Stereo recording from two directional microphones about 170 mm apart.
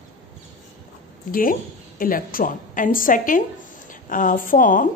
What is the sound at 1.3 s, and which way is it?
A woman's voice, 55° left (ahead or behind).